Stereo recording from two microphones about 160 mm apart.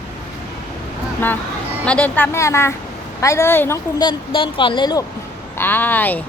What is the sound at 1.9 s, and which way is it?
Speech, 10° left (ahead or behind).